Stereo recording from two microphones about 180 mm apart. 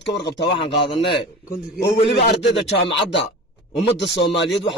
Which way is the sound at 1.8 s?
70° left (ahead or behind).